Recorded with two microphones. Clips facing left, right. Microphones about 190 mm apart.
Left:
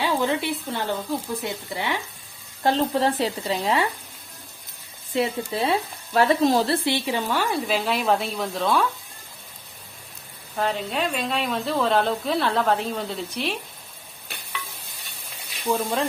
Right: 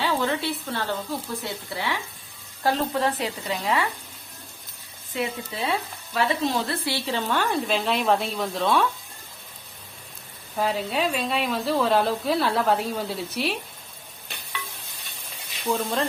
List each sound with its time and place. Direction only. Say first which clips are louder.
0.0 s a woman's voice: left 2 dB; 15° left (ahead or behind)
2.6 s speech: left 2 dB; 30° left (ahead or behind)
5.1 s speech: left 5 dB; 35° left (ahead or behind)
6.8 s a woman's voice: left 3 dB; 15° left (ahead or behind); by 8.9 s centre (ahead or behind)
10.6 s a woman's voice: right 1 dB; 5° right (ahead or behind)
15.7 s speech: left 1 dB; 5° left (ahead or behind)